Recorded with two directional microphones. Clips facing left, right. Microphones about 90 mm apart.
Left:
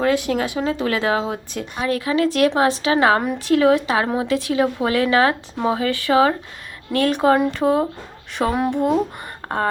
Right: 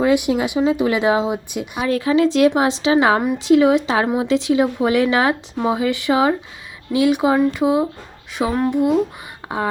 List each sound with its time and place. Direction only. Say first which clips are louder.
0.0 s speech: right 3 dB; 15° right (ahead or behind)
1.9 s speech: right 4 dB; 25° right (ahead or behind); by 7.9 s 10° right (ahead or behind)
8.4 s speech: even; 10° left (ahead or behind)
8.7 s speech: right 2 dB; 5° right (ahead or behind)